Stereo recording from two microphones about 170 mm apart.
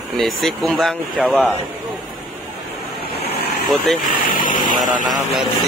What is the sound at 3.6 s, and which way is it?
Speech, centre (ahead or behind).